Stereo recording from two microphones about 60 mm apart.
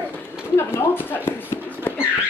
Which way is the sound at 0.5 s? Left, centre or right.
Left.